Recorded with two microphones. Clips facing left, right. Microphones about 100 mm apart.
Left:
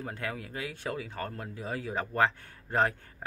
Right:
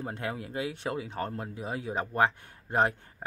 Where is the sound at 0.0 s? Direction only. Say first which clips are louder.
Right 2 dB; 25° right (ahead or behind).